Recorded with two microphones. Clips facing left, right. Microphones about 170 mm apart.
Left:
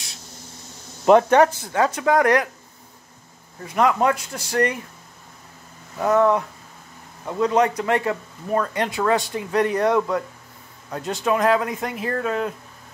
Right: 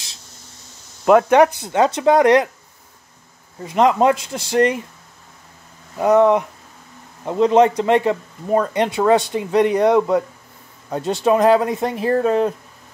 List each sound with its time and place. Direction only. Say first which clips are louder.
1.3 s speech: right 3 dB; 15° right (ahead or behind)
3.6 s speech: right 4 dB; 25° right (ahead or behind)
5.9 s speech: right 4 dB; 20° right (ahead or behind)